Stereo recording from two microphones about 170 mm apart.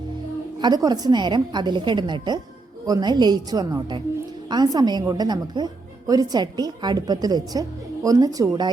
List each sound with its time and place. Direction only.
0.6 s a woman's voice: 25° right (ahead or behind)